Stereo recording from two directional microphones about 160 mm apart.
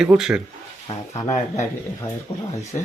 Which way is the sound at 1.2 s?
45° left (ahead or behind).